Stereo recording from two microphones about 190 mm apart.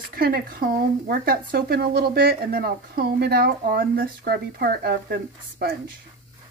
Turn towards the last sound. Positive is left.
turn(degrees=-55)  # may be behind; listen again after turning